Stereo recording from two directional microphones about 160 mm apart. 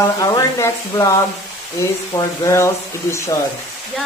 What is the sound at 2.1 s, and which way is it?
Speech, 20° left (ahead or behind).